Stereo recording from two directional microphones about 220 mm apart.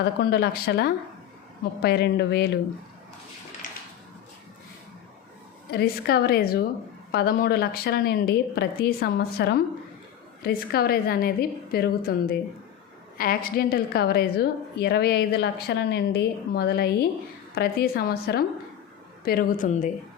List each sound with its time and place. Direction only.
0.0 s a woman's voice: 45° left (ahead or behind)
5.7 s a woman's voice: 45° left (ahead or behind)